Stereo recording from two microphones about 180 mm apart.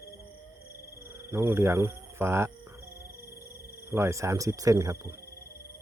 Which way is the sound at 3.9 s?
15° right (ahead or behind).